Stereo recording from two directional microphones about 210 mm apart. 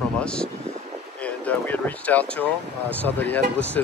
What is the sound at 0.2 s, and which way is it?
Speech, 5° left (ahead or behind).